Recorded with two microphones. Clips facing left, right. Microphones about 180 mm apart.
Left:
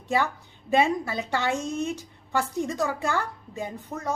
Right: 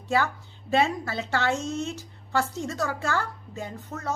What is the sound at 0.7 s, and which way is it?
A child's voice, 15° left (ahead or behind).